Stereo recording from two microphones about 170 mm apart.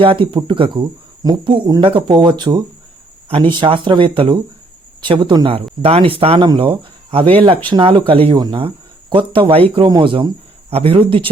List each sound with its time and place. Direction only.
0.0 s speech: 30° right (ahead or behind)